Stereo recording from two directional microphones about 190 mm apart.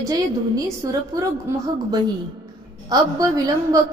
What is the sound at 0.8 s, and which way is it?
Speech, 20° right (ahead or behind).